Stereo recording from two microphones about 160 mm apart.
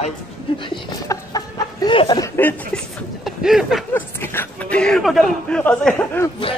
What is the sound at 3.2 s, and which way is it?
Speech, centre (ahead or behind).